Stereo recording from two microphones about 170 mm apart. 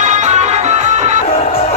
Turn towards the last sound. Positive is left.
turn(degrees=-40)  # may be behind; listen again after turning